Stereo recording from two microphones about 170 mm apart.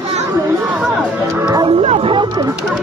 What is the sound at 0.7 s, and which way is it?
Music, 5° right (ahead or behind).